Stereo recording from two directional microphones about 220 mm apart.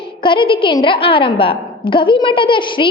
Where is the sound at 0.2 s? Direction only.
20° left (ahead or behind).